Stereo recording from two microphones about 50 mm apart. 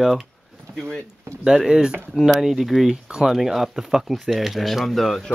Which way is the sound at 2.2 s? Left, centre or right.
Centre.